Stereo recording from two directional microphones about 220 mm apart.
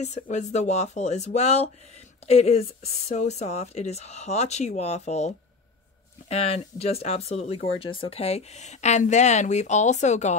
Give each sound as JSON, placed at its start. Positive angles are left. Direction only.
{"t": 0.0, "sound": "speech", "side_deg": 30}